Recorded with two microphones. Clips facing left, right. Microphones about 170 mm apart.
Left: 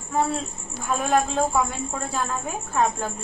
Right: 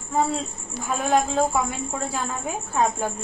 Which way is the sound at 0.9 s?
5° right (ahead or behind).